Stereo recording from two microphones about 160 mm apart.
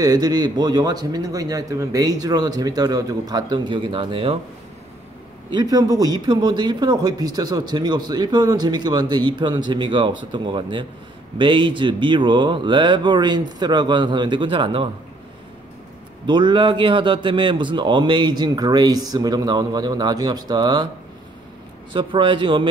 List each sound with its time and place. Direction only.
0.0 s speech: 25° right (ahead or behind)
5.5 s speech: 25° right (ahead or behind)
16.3 s speech: 30° right (ahead or behind)
21.9 s a man's voice: 30° right (ahead or behind)